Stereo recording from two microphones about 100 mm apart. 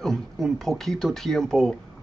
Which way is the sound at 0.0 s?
5° left (ahead or behind).